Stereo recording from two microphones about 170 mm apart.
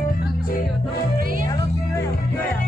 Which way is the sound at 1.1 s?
55° right (ahead or behind).